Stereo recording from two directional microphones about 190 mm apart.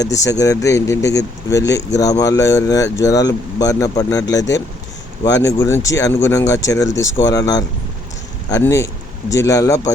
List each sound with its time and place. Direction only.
0.0 s speech: 15° left (ahead or behind)